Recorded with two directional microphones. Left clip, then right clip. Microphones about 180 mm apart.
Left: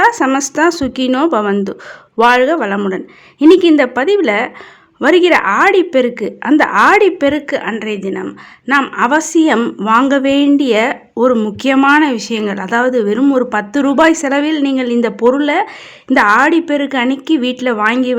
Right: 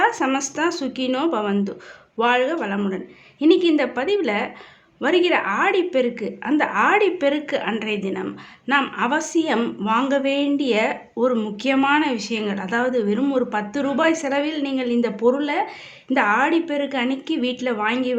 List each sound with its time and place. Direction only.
0.0 s a woman's voice: 40° left (ahead or behind)